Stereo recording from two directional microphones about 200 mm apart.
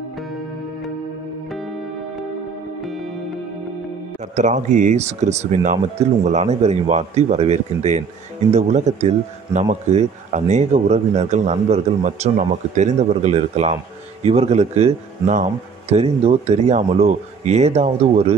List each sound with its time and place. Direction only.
2.8 s music: centre (ahead or behind)
4.4 s speech: 40° right (ahead or behind)